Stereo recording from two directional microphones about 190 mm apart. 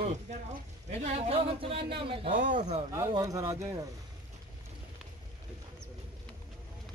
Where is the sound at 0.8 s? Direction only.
35° right (ahead or behind); by 3.8 s 15° right (ahead or behind).